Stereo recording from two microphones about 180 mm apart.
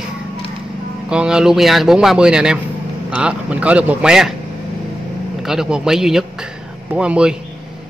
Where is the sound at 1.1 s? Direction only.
5° right (ahead or behind).